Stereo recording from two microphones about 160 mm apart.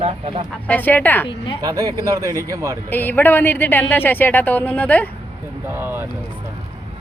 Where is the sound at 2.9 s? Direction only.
10° left (ahead or behind).